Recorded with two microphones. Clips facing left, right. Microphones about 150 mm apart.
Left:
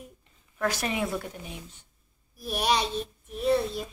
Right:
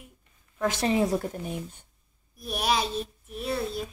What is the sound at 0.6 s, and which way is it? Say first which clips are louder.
Speech: right 4 dB; 25° right (ahead or behind).